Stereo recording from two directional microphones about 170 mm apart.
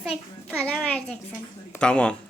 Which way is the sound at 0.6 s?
5° left (ahead or behind).